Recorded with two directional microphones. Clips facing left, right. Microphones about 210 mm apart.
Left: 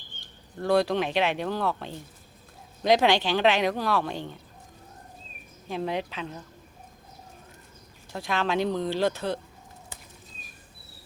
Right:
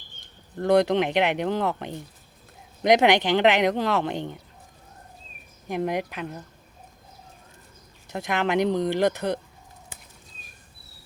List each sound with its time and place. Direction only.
0.6 s speech: 20° right (ahead or behind)
5.6 s speech: 15° right (ahead or behind)
8.1 s speech: 20° right (ahead or behind)